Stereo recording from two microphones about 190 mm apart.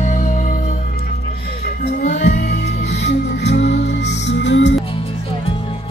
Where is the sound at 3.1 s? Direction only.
65° left (ahead or behind).